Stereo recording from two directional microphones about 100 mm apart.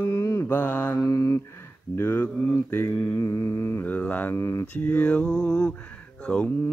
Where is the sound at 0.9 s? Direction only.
35° left (ahead or behind).